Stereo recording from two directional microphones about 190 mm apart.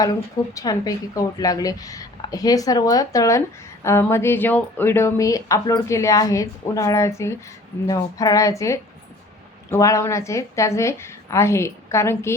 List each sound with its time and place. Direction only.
0.0 s a woman's voice: 20° left (ahead or behind)